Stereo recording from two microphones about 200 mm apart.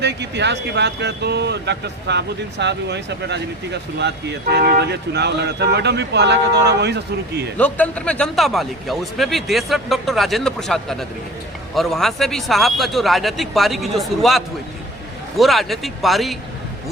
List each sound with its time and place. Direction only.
0.0 s speech: 60° right (ahead or behind)
7.6 s speech: 5° left (ahead or behind)